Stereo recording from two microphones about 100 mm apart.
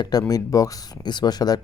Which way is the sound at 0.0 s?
40° left (ahead or behind).